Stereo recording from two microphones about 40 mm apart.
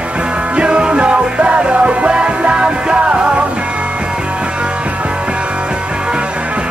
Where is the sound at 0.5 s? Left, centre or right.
Right.